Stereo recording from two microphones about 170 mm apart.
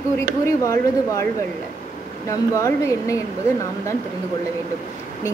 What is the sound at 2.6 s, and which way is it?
Speech, 20° left (ahead or behind).